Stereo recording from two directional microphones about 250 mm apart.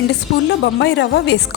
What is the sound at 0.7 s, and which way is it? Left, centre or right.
Speech, left.